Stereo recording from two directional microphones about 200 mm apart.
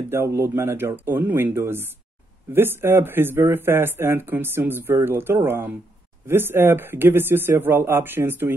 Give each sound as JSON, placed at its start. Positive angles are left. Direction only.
{"t": 0.1, "sound": "speech", "side_deg": -15}